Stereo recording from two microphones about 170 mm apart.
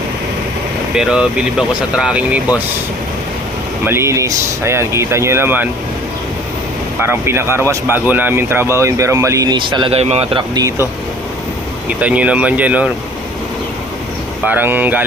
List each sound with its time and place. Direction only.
0.9 s speech: 5° right (ahead or behind)
3.8 s speech: 15° right (ahead or behind)
7.0 s speech: 15° right (ahead or behind); by 10.4 s 35° right (ahead or behind)
10.5 s speech: 20° right (ahead or behind)
11.9 s speech: 10° right (ahead or behind)
14.4 s speech: 10° right (ahead or behind)